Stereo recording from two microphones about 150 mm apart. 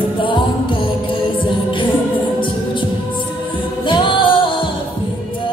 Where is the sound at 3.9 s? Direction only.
35° left (ahead or behind).